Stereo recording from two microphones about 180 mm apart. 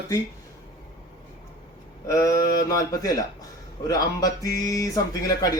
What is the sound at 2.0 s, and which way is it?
Speech, 20° left (ahead or behind).